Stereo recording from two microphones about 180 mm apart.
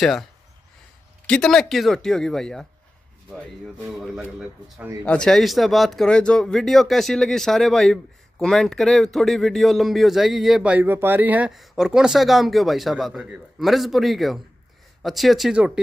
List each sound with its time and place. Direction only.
1.2 s speech: 5° left (ahead or behind)
3.8 s speech: centre (ahead or behind)